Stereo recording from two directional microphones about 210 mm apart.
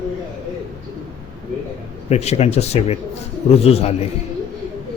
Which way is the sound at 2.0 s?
30° left (ahead or behind).